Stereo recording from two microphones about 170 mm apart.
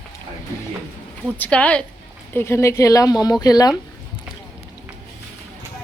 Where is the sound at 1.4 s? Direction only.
10° left (ahead or behind).